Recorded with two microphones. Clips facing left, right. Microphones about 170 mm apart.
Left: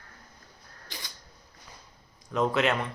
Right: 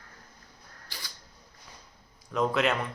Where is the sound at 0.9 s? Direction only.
20° left (ahead or behind).